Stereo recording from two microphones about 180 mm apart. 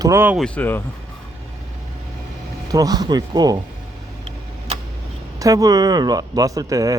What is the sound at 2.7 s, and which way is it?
Speech, 20° right (ahead or behind).